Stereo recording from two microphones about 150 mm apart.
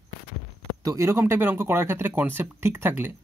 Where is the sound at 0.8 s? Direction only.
20° right (ahead or behind).